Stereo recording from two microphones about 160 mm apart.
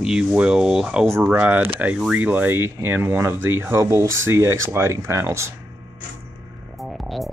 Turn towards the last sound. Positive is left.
turn(degrees=0)  # may be behind; listen again after turning